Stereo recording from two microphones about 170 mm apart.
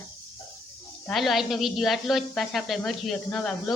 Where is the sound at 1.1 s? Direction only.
Centre (ahead or behind).